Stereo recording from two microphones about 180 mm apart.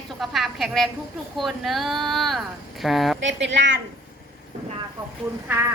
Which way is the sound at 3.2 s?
85° right.